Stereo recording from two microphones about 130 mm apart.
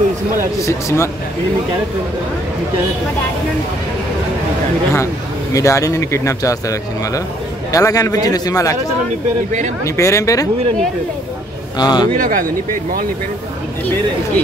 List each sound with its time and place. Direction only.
0.7 s a man's voice: 20° left (ahead or behind)
4.9 s a man's voice: 25° left (ahead or behind)
9.8 s a man's voice: 25° left (ahead or behind)
11.8 s speech: 35° left (ahead or behind)
12.2 s speech: 90° right